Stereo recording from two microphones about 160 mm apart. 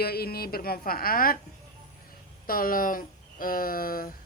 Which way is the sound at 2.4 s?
65° left (ahead or behind).